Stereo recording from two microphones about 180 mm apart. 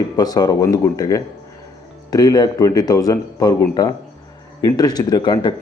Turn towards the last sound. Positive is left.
turn(degrees=20)  # may be behind; listen again after turning